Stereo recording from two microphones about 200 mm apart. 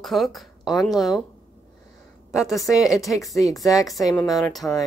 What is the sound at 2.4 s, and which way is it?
Speech, centre (ahead or behind).